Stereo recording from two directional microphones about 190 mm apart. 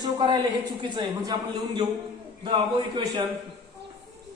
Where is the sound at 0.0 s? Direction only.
20° right (ahead or behind).